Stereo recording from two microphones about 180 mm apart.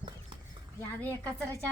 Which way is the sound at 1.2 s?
15° right (ahead or behind).